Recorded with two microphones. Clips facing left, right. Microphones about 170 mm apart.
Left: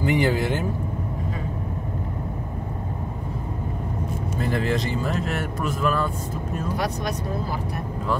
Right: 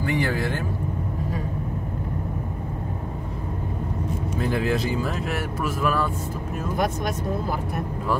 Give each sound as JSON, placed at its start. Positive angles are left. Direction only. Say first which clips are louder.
{"t": 0.0, "sound": "a man's voice", "louder": "left 3 dB", "side_deg": 20}
{"t": 4.4, "sound": "speech", "louder": "even", "side_deg": -5}